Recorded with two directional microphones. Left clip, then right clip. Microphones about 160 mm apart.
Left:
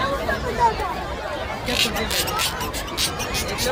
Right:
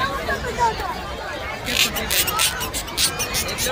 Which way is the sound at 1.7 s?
20° left (ahead or behind).